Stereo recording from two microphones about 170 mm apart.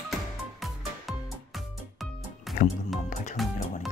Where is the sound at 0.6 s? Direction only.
Centre (ahead or behind).